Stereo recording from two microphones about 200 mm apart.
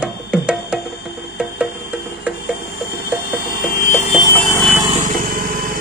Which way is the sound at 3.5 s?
45° left (ahead or behind).